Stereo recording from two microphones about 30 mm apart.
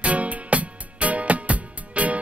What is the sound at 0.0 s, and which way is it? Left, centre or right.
Music, right.